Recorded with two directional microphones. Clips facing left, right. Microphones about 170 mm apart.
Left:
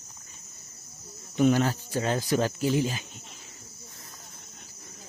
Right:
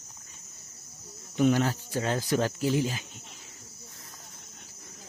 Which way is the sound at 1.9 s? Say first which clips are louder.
Left 1 dB; 25° left (ahead or behind).